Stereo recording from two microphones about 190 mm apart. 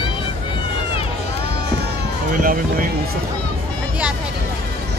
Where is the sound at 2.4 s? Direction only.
50° right (ahead or behind).